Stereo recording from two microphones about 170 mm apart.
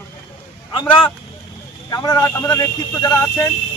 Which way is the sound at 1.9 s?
25° left (ahead or behind).